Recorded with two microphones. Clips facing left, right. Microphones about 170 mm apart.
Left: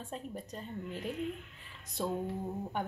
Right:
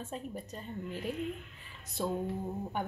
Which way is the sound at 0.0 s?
5° right (ahead or behind).